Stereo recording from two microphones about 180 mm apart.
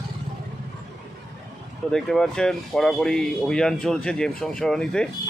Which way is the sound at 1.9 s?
5° left (ahead or behind).